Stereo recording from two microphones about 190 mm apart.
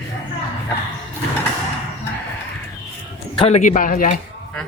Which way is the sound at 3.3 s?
30° left (ahead or behind).